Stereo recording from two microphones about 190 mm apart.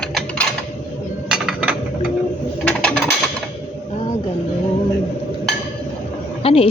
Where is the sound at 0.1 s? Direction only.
5° left (ahead or behind).